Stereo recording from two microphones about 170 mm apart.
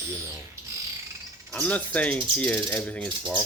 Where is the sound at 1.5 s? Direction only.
10° left (ahead or behind).